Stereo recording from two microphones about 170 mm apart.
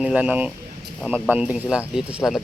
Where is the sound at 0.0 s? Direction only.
10° right (ahead or behind).